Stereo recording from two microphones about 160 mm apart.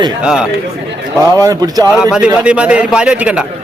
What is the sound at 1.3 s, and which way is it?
Speech, 25° right (ahead or behind).